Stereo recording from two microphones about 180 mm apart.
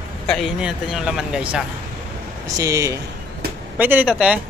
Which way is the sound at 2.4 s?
20° right (ahead or behind).